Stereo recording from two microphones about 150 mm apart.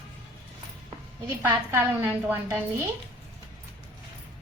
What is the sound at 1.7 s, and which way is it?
Speech, 15° right (ahead or behind).